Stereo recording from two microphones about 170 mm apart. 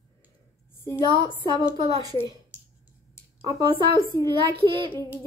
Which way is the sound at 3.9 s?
25° right (ahead or behind).